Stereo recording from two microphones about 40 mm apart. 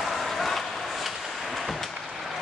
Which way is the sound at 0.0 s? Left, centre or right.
Centre.